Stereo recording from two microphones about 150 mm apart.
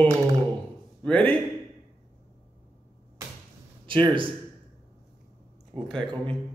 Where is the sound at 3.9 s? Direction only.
35° right (ahead or behind).